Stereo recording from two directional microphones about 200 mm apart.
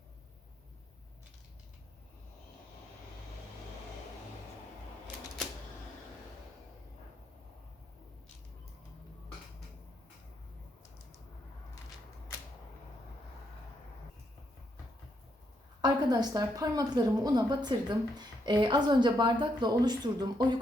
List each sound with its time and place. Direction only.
15.8 s a woman's voice: 20° right (ahead or behind)